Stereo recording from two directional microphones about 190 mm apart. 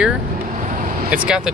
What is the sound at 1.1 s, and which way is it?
Speech, 5° right (ahead or behind).